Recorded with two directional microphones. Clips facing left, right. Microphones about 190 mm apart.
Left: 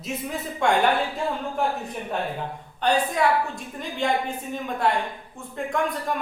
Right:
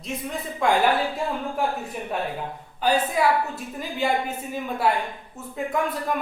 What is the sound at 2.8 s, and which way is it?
A woman's voice, 5° right (ahead or behind).